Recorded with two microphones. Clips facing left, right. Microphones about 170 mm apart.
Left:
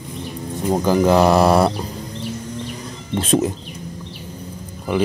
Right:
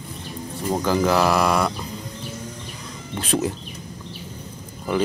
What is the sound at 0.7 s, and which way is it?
Speech, 15° left (ahead or behind).